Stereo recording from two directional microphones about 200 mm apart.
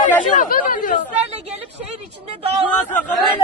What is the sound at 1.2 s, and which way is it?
A woman's voice, 35° right (ahead or behind).